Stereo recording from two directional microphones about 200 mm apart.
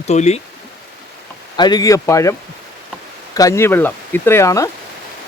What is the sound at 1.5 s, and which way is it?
Speech, 20° left (ahead or behind).